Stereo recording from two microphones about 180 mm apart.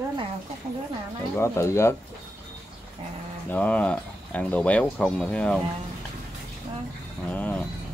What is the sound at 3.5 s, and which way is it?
Speech, 10° left (ahead or behind).